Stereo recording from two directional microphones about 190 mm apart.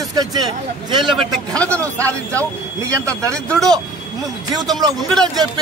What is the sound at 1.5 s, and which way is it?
Speech, 5° left (ahead or behind).